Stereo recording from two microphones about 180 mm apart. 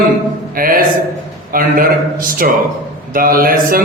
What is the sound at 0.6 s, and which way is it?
Speech, 55° right (ahead or behind).